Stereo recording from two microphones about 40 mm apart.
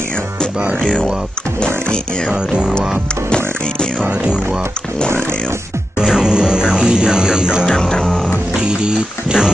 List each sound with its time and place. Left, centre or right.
6.1 s music: centre
7.7 s music: centre
8.5 s music: right